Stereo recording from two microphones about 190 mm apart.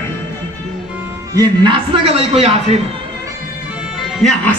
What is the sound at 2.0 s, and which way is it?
Speech, 30° right (ahead or behind).